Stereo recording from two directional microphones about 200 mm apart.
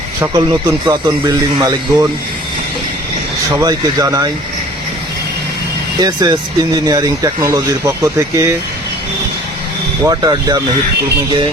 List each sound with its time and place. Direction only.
0.2 s speech: 15° right (ahead or behind)
3.6 s speech: 20° right (ahead or behind)
6.0 s speech: 20° right (ahead or behind)
10.1 s speech: 20° right (ahead or behind)